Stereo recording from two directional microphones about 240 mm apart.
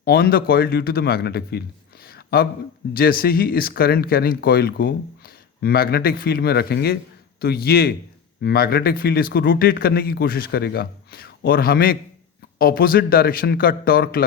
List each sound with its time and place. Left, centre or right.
0.0 s a man's voice: left